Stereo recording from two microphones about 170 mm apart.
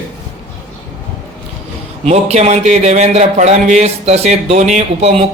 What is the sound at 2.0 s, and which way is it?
A man's voice, 40° right (ahead or behind).